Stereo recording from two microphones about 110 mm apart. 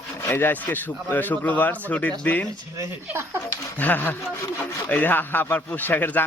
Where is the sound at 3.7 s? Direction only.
15° left (ahead or behind).